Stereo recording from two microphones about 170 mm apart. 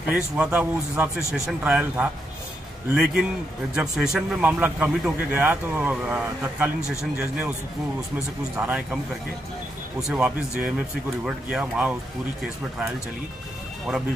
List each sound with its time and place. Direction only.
0.1 s a man's voice: 5° right (ahead or behind)
8.5 s a man's voice: 10° right (ahead or behind)
9.9 s speech: 5° right (ahead or behind)